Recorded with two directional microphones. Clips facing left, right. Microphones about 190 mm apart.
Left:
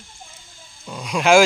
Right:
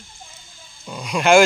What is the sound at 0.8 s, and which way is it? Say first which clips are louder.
Speech: even; centre (ahead or behind).